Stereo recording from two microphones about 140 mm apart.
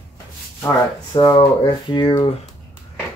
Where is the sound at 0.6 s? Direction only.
25° left (ahead or behind).